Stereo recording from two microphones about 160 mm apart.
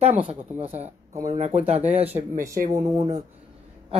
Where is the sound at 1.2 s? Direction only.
45° right (ahead or behind).